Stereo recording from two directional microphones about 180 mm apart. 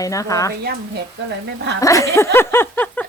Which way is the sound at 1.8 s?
15° left (ahead or behind).